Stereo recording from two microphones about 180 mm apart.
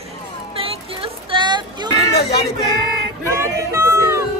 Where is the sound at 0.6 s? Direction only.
30° right (ahead or behind).